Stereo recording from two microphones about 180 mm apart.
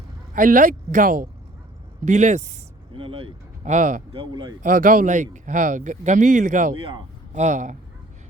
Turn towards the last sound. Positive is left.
turn(degrees=-45)  # may be behind; listen again after turning